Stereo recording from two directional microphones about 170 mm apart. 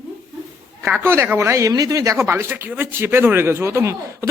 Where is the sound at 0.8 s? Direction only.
15° right (ahead or behind).